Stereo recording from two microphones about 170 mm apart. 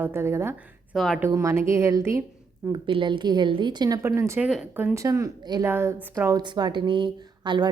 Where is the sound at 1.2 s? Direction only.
15° right (ahead or behind).